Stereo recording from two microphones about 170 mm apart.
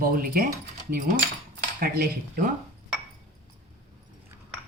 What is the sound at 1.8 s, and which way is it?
Speech, 65° right (ahead or behind).